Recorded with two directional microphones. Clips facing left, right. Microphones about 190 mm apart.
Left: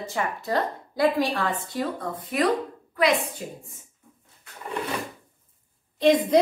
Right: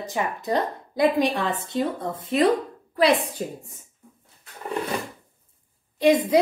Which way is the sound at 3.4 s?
40° right (ahead or behind).